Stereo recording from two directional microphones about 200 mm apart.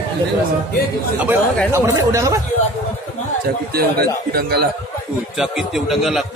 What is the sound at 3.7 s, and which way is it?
Speech, 50° right (ahead or behind).